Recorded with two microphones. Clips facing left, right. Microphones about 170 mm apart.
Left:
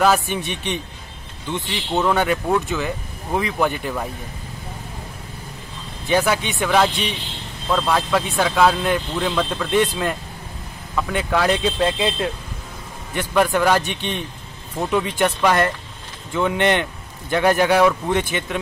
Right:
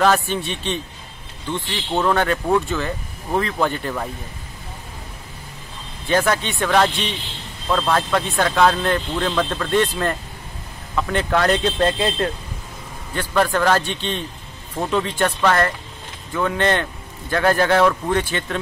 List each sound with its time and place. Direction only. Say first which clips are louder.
0.0 s speech: even; 10° left (ahead or behind)
2.0 s speech: even; 10° left (ahead or behind)
6.0 s speech: even; 10° left (ahead or behind)